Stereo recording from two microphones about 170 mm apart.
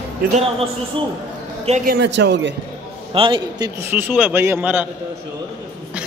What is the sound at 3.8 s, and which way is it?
A woman's voice, 10° right (ahead or behind).